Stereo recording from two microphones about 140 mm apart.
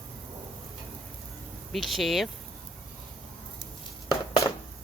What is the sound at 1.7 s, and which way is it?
Speech, centre (ahead or behind).